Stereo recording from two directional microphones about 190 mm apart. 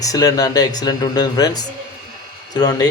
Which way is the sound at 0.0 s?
20° left (ahead or behind).